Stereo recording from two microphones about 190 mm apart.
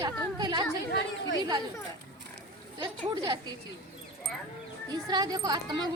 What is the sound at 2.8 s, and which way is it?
Speech, 20° right (ahead or behind).